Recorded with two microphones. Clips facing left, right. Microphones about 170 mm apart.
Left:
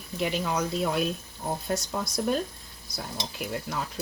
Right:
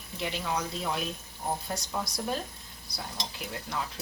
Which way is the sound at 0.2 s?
50° left (ahead or behind).